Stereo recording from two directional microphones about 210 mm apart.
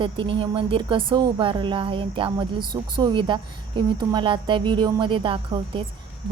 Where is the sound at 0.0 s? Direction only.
25° right (ahead or behind).